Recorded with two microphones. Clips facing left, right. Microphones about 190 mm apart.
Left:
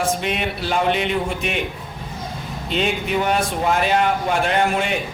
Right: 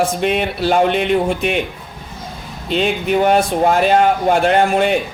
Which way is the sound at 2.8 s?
45° right (ahead or behind).